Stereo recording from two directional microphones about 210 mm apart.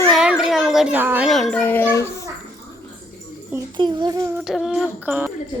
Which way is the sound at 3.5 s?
15° right (ahead or behind).